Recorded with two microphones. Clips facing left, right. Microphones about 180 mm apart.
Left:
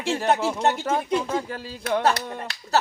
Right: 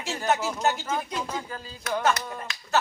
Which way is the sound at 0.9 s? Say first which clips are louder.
Left 7 dB; 65° left (ahead or behind).